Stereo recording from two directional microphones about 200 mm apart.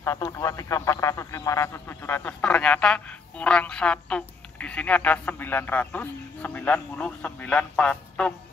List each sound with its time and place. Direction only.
0.0 s speech: 15° left (ahead or behind)